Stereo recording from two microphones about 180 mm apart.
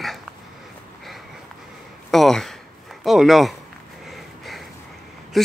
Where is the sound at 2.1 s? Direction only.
Centre (ahead or behind).